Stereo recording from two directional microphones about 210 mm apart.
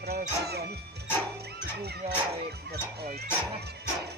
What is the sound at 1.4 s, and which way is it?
Music, 50° right (ahead or behind).